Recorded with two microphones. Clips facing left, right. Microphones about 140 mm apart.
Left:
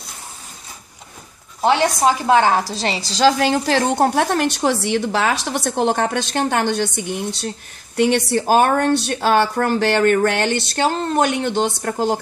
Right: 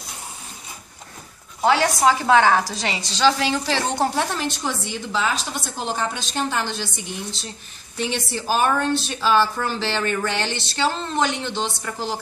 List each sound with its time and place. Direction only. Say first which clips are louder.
1.6 s a woman's voice: left 2 dB; 20° left (ahead or behind); by 12.2 s 55° left (ahead or behind)